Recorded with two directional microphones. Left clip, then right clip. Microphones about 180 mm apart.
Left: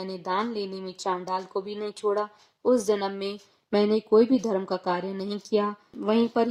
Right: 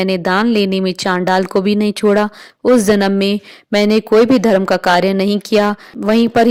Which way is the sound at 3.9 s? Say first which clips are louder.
Right 11 dB; 40° right (ahead or behind).